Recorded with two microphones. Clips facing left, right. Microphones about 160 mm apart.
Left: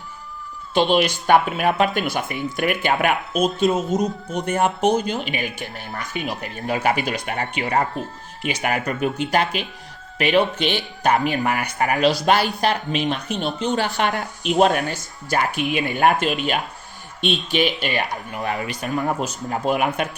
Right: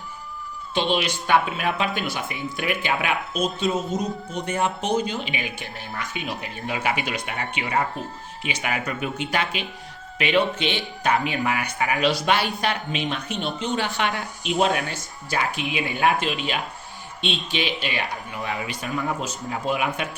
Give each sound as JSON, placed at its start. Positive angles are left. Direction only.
{"t": 0.7, "sound": "a man's voice", "side_deg": 45}